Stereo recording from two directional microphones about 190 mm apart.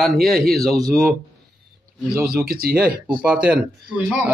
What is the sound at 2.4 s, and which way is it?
Speech, 55° right (ahead or behind).